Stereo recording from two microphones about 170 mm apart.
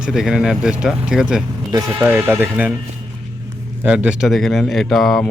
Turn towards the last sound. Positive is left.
turn(degrees=0)  # may be behind; listen again after turning